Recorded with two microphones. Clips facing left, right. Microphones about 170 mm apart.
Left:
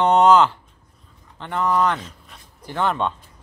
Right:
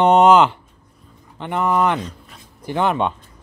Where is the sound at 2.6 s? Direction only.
15° right (ahead or behind).